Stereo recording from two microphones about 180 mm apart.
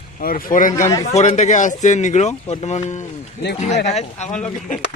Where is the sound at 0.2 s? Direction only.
55° left (ahead or behind); by 3.8 s 35° left (ahead or behind).